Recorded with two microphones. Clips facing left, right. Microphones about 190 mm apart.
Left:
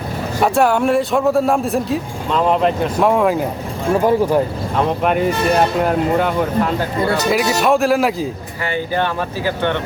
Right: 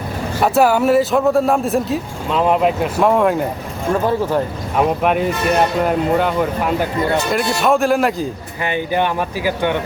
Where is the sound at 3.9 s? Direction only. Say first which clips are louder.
Left 4 dB; 15° left (ahead or behind).